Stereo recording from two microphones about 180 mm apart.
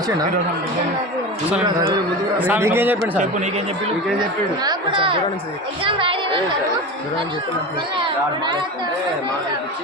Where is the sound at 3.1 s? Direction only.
40° right (ahead or behind).